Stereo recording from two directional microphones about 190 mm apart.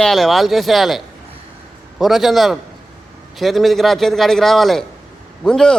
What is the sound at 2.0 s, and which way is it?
A man's voice, centre (ahead or behind).